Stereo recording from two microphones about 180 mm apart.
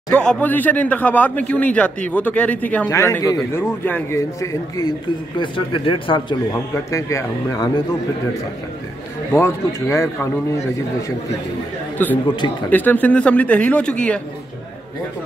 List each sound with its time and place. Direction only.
0.1 s speech: 5° left (ahead or behind)
9.3 s speech: 15° left (ahead or behind)
12.0 s speech: 10° left (ahead or behind)